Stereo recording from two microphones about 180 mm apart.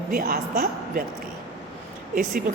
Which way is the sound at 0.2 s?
55° right (ahead or behind).